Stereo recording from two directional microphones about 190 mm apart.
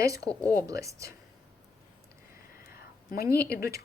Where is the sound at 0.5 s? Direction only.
15° right (ahead or behind).